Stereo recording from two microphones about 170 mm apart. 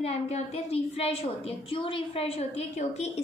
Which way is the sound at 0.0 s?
35° left (ahead or behind).